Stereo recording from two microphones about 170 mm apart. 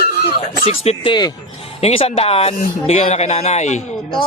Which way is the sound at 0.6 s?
35° left (ahead or behind).